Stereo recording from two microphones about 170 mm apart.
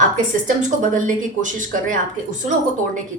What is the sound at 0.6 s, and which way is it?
A woman's voice, 45° right (ahead or behind).